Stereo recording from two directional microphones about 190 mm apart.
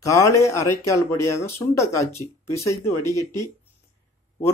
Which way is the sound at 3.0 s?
20° right (ahead or behind).